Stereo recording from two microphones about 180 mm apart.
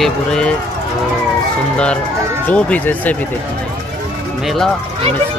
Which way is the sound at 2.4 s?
10° left (ahead or behind).